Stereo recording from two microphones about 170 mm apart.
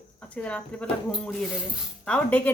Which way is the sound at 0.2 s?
10° left (ahead or behind).